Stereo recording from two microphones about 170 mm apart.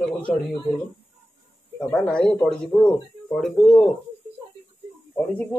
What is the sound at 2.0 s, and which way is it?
Speech, 5° left (ahead or behind).